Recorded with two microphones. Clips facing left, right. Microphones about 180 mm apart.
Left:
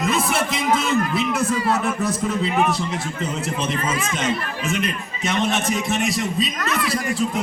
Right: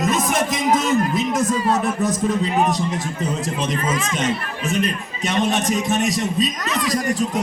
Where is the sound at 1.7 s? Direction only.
40° right (ahead or behind).